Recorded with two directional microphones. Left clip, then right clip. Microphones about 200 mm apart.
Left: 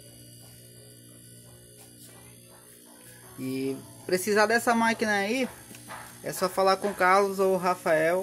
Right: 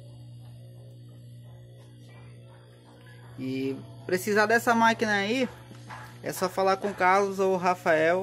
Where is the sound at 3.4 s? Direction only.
10° right (ahead or behind).